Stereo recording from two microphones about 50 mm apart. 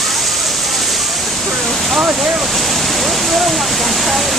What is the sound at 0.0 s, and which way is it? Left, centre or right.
Waterfall, centre.